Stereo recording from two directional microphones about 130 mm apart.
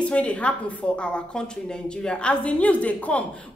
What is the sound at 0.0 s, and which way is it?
A woman's voice, 10° left (ahead or behind).